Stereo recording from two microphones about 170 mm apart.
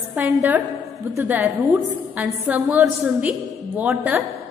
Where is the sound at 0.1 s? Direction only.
10° right (ahead or behind).